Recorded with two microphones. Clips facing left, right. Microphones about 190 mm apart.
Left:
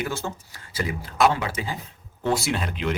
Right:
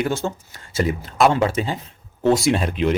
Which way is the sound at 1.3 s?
25° right (ahead or behind).